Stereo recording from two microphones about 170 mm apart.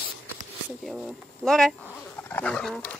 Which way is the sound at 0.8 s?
Centre (ahead or behind).